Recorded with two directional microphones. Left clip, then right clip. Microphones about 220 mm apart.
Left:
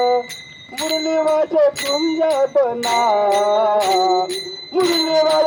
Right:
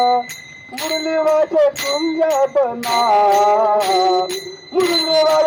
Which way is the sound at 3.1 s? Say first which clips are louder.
Right 6 dB; 40° left (ahead or behind).